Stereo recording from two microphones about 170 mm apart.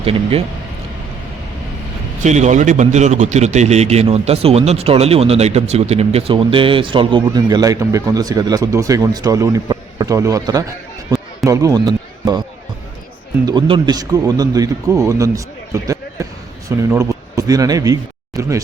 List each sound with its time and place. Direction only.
0.0 s a man's voice: 35° right (ahead or behind)
2.2 s a man's voice: 45° right (ahead or behind); by 12.4 s 20° right (ahead or behind)
13.4 s speech: 25° right (ahead or behind)
15.7 s basketball bounce: 20° right (ahead or behind)
16.6 s speech: 20° right (ahead or behind)